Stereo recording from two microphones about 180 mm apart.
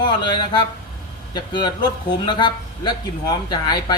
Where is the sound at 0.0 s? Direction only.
25° left (ahead or behind).